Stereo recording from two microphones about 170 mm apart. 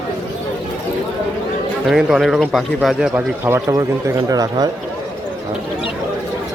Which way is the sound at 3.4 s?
15° right (ahead or behind).